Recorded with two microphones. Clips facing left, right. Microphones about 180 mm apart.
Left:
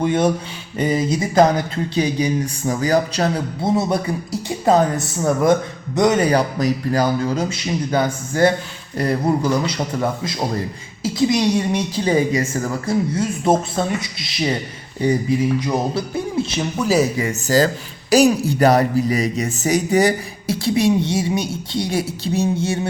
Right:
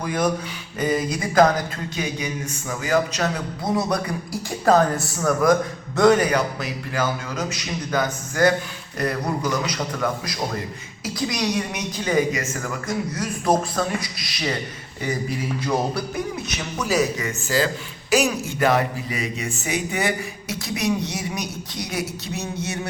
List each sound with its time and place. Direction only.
0.0 s speech: 25° left (ahead or behind)
6.2 s speech: 35° left (ahead or behind)
15.6 s speech: 25° left (ahead or behind)